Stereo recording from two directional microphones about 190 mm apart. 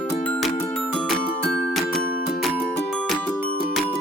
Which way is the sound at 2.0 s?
50° left (ahead or behind).